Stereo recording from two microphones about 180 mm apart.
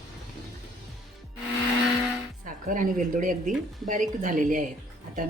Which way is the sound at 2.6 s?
45° right (ahead or behind).